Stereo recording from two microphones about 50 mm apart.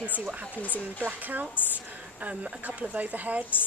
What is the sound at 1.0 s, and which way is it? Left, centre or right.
A woman's voice, right.